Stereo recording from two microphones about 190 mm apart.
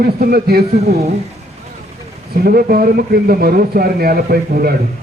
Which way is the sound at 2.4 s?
50° right (ahead or behind).